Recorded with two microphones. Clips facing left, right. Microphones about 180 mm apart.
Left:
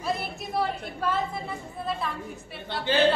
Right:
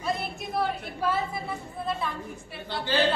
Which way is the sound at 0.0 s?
Centre (ahead or behind).